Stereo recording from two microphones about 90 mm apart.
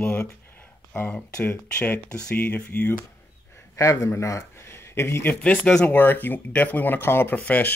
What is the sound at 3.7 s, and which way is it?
Speech, 35° left (ahead or behind).